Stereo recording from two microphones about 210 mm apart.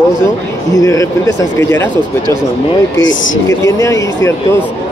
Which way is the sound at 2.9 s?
65° left (ahead or behind).